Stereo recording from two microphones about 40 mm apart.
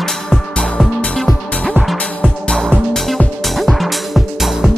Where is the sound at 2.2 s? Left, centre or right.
Centre.